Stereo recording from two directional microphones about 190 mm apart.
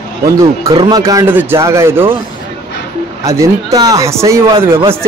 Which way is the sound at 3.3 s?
15° right (ahead or behind).